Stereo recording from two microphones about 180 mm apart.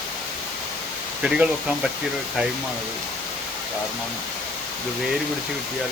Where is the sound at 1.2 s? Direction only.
5° right (ahead or behind).